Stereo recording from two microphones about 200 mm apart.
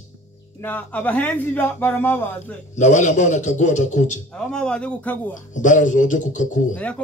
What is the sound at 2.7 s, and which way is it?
A man's voice, 35° left (ahead or behind).